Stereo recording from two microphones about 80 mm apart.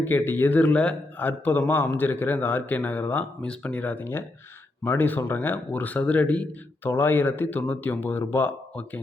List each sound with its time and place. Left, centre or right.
0.0 s a man's voice: left
6.9 s a man's voice: left